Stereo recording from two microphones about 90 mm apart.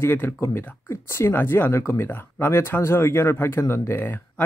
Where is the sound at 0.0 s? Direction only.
25° left (ahead or behind).